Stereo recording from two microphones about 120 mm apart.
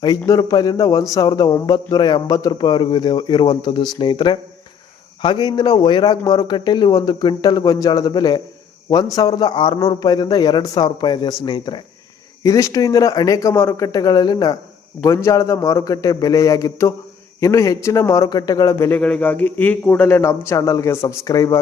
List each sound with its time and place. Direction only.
0.0 s speech: 35° left (ahead or behind)
12.4 s a man's voice: 25° left (ahead or behind)
18.9 s a man's voice: 10° left (ahead or behind); by 21.6 s 30° left (ahead or behind)